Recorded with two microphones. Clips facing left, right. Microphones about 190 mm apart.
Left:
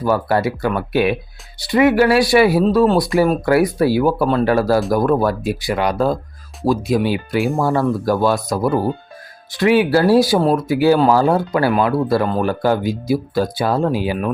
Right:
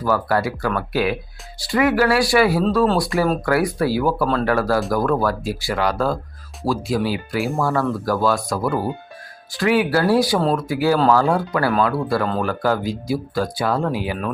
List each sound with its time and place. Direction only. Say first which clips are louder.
0.0 s speech: left 3 dB; 25° left (ahead or behind)